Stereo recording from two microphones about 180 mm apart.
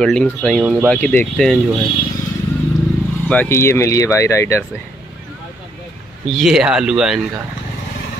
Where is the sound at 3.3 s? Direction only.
10° left (ahead or behind).